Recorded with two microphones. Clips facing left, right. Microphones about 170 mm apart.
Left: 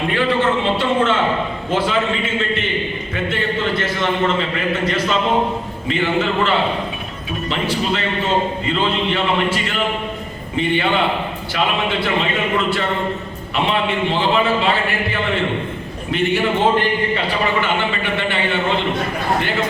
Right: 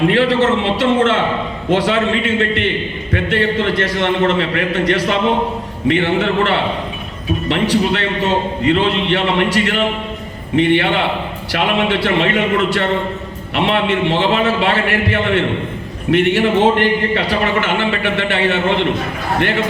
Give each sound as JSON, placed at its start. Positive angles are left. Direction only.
{"t": 0.1, "sound": "a man's voice", "side_deg": -90}